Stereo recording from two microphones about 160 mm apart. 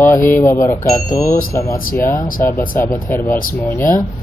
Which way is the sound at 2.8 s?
10° left (ahead or behind).